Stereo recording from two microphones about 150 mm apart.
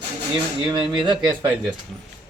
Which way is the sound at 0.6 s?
30° right (ahead or behind).